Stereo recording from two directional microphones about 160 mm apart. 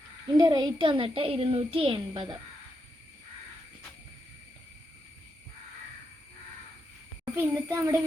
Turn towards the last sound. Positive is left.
turn(degrees=-15)  # may be behind; listen again after turning